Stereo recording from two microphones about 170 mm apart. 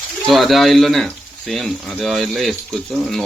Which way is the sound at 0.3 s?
Centre (ahead or behind).